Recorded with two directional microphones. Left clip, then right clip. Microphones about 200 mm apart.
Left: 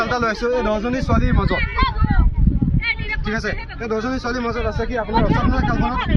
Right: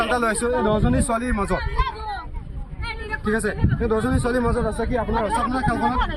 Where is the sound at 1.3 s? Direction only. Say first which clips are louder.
Left 3 dB; 25° right (ahead or behind).